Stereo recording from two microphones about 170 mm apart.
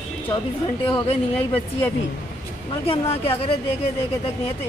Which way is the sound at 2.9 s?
35° left (ahead or behind).